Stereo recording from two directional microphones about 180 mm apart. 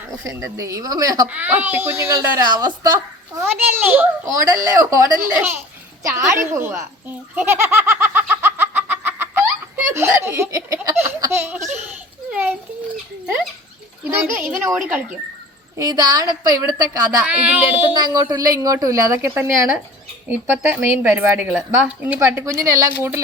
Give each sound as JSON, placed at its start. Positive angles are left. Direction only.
{"t": 0.3, "sound": "a woman's voice", "side_deg": -15}
{"t": 1.3, "sound": "a woman's voice", "side_deg": -10}
{"t": 7.3, "sound": "a sound", "side_deg": -15}
{"t": 14.0, "sound": "a child's voice", "side_deg": -10}
{"t": 15.7, "sound": "a woman's voice", "side_deg": -20}
{"t": 17.2, "sound": "a woman's voice", "side_deg": -5}
{"t": 18.0, "sound": "a woman's voice", "side_deg": -20}